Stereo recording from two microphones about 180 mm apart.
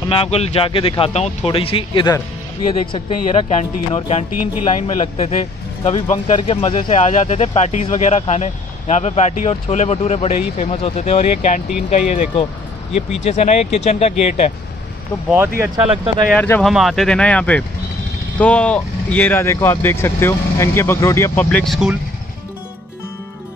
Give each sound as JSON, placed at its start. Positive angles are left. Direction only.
{"t": 0.1, "sound": "speech", "side_deg": 35}
{"t": 3.4, "sound": "speech", "side_deg": 40}
{"t": 15.6, "sound": "speech", "side_deg": -20}
{"t": 16.3, "sound": "speech", "side_deg": 10}
{"t": 21.5, "sound": "speech", "side_deg": 5}